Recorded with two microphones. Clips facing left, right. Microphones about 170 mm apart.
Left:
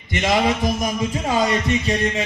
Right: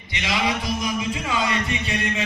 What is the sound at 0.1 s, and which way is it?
A man's voice, 50° left (ahead or behind).